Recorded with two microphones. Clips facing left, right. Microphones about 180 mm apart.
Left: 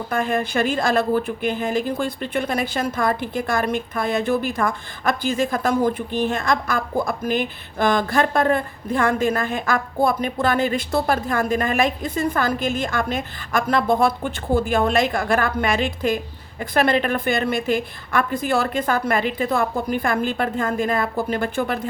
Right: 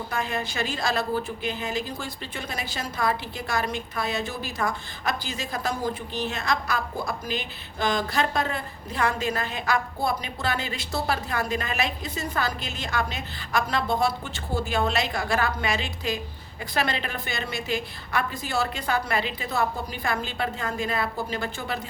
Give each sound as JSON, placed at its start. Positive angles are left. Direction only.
{"t": 0.1, "sound": "speech", "side_deg": 50}